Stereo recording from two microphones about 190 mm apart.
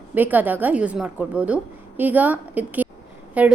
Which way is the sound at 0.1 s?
10° right (ahead or behind).